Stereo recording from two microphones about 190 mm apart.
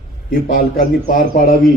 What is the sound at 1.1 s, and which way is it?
Speech, 45° left (ahead or behind).